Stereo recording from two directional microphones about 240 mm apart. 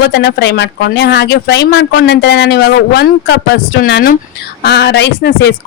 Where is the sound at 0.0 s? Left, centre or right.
Left.